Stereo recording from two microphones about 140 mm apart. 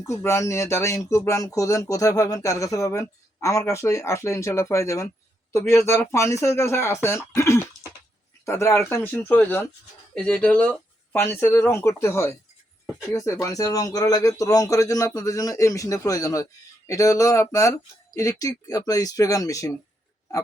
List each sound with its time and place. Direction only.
0.0 s speech: 20° left (ahead or behind)